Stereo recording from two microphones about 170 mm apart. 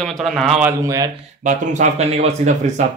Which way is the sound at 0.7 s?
20° right (ahead or behind).